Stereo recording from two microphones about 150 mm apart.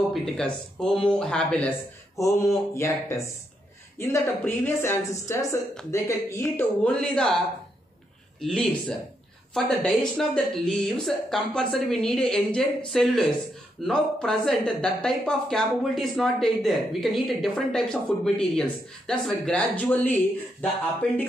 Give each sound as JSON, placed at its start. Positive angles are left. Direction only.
{"t": 0.1, "sound": "speech", "side_deg": 5}
{"t": 2.1, "sound": "speech", "side_deg": 20}
{"t": 6.5, "sound": "speech", "side_deg": 5}
{"t": 8.4, "sound": "speech", "side_deg": 5}